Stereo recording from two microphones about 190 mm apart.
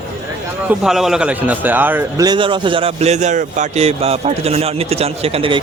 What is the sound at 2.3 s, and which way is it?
Speech, 25° right (ahead or behind).